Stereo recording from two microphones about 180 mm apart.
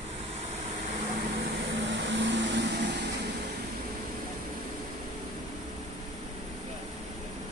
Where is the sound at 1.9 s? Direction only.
85° right.